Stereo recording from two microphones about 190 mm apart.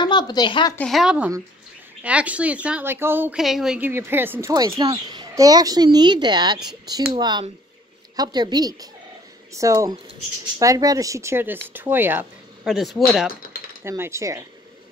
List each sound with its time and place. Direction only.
0.0 s speech: 20° left (ahead or behind)
0.7 s a woman's voice: centre (ahead or behind)
12.6 s speech: centre (ahead or behind)
13.8 s a woman's voice: 15° right (ahead or behind)